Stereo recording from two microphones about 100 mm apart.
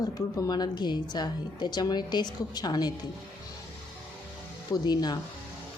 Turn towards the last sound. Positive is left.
turn(degrees=45)  # may be behind; listen again after turning